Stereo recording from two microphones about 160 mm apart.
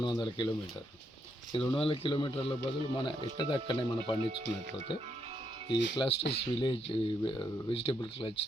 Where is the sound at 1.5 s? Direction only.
35° left (ahead or behind).